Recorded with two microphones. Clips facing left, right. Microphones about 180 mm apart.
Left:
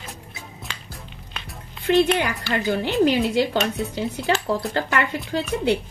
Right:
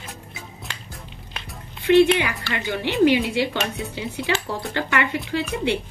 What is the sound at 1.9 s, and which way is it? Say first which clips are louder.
Speech: right 3 dB; 40° left (ahead or behind).